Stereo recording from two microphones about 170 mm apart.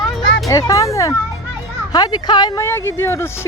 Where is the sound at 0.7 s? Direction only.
20° left (ahead or behind).